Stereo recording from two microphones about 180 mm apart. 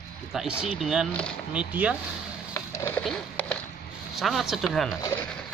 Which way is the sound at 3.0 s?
5° left (ahead or behind).